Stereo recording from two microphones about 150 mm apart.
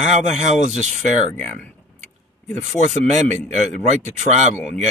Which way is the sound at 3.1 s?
50° right (ahead or behind).